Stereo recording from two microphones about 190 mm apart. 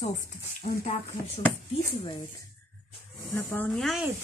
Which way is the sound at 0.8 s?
30° left (ahead or behind).